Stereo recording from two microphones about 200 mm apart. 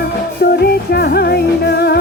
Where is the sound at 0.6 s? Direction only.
55° left (ahead or behind).